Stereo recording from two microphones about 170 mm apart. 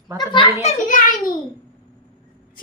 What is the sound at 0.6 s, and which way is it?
Speech, 50° left (ahead or behind).